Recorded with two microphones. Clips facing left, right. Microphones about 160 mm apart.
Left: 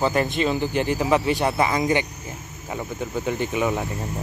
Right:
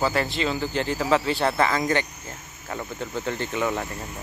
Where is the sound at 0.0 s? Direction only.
20° left (ahead or behind).